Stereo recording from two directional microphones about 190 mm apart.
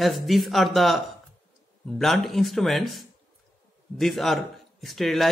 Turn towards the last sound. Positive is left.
turn(degrees=0)  # may be behind; listen again after turning